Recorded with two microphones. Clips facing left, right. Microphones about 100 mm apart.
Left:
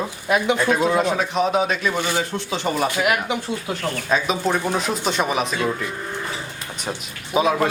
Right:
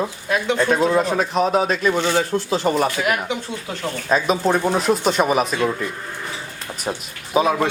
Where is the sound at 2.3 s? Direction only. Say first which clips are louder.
Right 5 dB; 35° right (ahead or behind).